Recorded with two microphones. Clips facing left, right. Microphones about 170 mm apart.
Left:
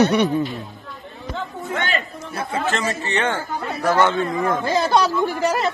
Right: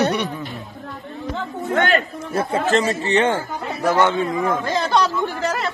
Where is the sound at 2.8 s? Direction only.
25° right (ahead or behind).